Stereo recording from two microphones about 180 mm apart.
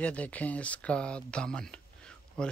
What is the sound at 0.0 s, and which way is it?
Speech, 5° left (ahead or behind).